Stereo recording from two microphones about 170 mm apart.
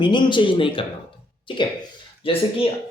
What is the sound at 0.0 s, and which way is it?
Speech, 25° left (ahead or behind).